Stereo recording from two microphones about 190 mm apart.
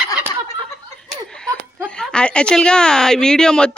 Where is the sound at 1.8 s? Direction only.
5° left (ahead or behind).